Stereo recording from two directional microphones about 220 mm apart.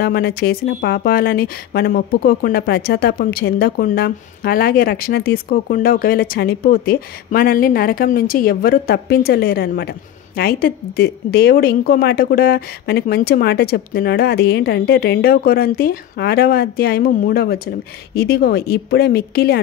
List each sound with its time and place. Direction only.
0.0 s speech: 45° left (ahead or behind)